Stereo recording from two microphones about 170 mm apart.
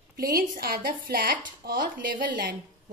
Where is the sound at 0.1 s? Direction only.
60° right (ahead or behind).